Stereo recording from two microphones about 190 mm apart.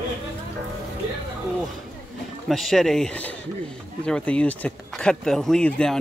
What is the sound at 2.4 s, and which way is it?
Speech, centre (ahead or behind).